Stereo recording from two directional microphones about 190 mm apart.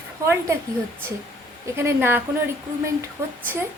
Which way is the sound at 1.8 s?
10° right (ahead or behind).